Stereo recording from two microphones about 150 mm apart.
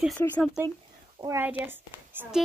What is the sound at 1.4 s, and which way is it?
A woman's voice, 15° right (ahead or behind).